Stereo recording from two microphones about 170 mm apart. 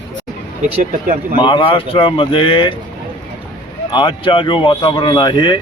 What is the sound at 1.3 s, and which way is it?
Speech, 30° left (ahead or behind).